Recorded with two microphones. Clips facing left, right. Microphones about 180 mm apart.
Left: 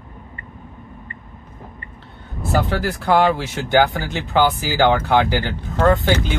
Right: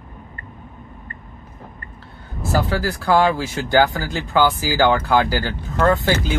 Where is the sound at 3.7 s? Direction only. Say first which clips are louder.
Even; 20° left (ahead or behind).